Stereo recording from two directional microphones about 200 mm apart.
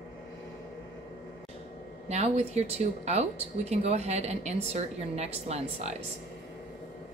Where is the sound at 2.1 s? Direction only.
35° right (ahead or behind).